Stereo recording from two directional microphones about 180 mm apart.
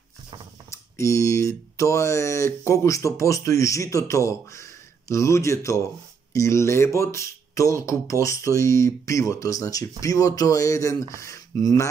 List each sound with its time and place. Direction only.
0.9 s speech: 15° left (ahead or behind)